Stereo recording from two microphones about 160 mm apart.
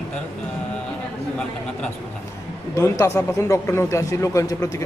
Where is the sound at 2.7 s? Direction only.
20° left (ahead or behind).